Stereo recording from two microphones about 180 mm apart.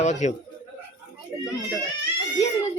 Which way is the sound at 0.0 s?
40° left (ahead or behind).